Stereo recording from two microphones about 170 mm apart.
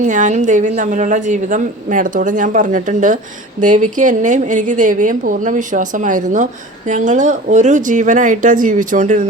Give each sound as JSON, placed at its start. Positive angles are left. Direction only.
{"t": 0.0, "sound": "a woman's voice", "side_deg": -45}